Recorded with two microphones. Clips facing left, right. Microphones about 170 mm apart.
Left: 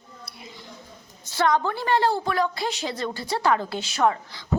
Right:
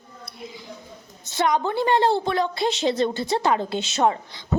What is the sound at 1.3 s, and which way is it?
A woman's voice, 20° right (ahead or behind).